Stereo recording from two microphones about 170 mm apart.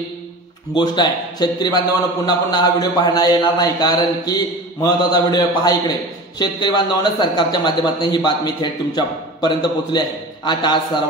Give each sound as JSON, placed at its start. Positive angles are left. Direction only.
{"t": 0.7, "sound": "a man's voice", "side_deg": 25}